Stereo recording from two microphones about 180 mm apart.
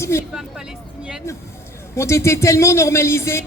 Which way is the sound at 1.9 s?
15° left (ahead or behind).